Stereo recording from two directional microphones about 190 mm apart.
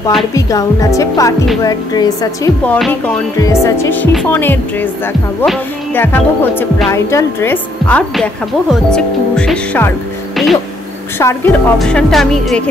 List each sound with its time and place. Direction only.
0.3 s a woman's voice: 20° left (ahead or behind)
2.6 s a woman's voice: 10° left (ahead or behind)
11.1 s a woman's voice: 15° left (ahead or behind)
11.8 s speech: centre (ahead or behind)